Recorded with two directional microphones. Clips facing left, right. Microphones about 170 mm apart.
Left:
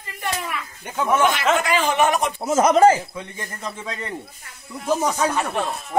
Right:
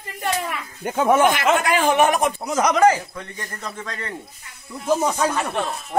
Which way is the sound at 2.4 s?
25° left (ahead or behind).